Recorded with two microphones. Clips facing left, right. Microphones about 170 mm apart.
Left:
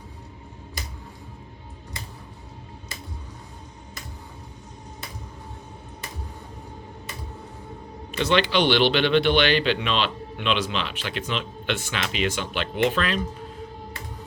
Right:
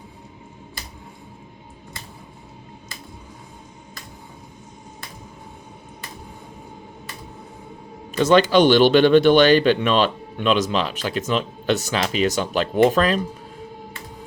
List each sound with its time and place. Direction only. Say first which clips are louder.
8.1 s speech: right 7 dB; 45° right (ahead or behind)